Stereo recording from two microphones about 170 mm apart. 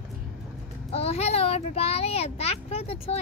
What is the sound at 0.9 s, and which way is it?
A child's voice, 35° left (ahead or behind).